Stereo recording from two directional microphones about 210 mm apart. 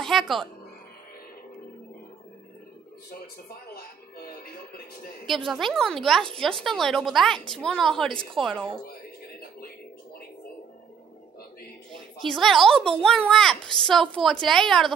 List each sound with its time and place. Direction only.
0.0 s speech: centre (ahead or behind)
3.1 s a sound: 50° left (ahead or behind)
5.3 s a woman's voice: centre (ahead or behind)
12.3 s a woman's voice: centre (ahead or behind)